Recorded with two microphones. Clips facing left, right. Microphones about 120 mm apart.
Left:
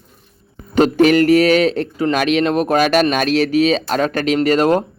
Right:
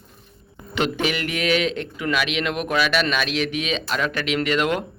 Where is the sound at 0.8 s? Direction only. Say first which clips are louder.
Left 12 dB; 40° left (ahead or behind).